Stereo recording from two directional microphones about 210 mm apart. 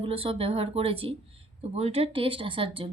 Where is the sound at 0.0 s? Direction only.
25° right (ahead or behind).